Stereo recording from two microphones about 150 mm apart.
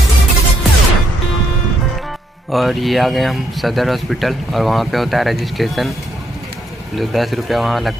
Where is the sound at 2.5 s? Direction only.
Centre (ahead or behind).